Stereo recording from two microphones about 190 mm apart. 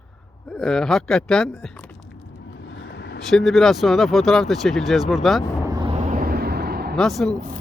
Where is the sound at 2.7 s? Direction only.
65° left (ahead or behind).